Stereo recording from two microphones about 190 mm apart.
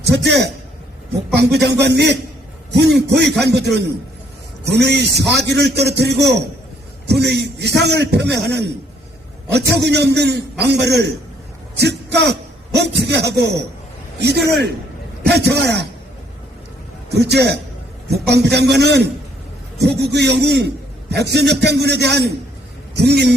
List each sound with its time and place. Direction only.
0.0 s a man's voice: 65° right (ahead or behind)
17.1 s a man's voice: 60° right (ahead or behind)